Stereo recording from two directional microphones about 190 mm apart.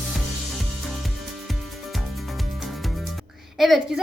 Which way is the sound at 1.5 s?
Centre (ahead or behind).